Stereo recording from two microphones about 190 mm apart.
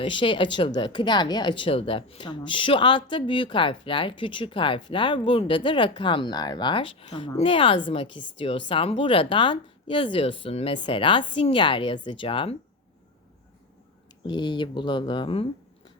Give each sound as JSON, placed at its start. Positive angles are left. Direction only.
{"t": 0.0, "sound": "speech", "side_deg": 25}
{"t": 14.3, "sound": "speech", "side_deg": 25}